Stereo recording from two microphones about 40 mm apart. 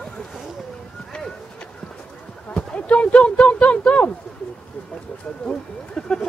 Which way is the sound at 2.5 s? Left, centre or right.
Left.